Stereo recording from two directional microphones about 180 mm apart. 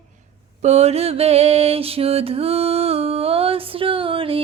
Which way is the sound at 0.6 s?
35° right (ahead or behind).